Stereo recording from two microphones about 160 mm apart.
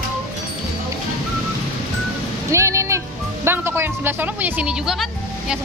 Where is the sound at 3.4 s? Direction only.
15° right (ahead or behind).